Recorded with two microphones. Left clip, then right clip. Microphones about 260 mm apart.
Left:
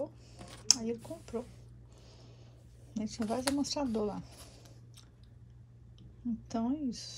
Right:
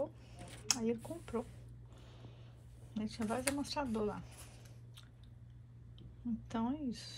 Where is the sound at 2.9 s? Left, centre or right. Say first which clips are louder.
Left 4 dB; centre.